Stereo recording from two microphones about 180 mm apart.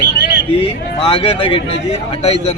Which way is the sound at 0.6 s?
30° left (ahead or behind).